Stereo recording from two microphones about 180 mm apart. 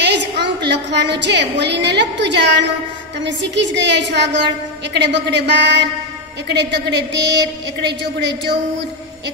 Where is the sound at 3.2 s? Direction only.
75° right (ahead or behind).